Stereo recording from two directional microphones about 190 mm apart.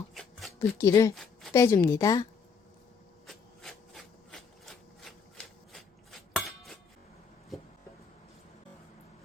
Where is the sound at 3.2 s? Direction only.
Centre (ahead or behind).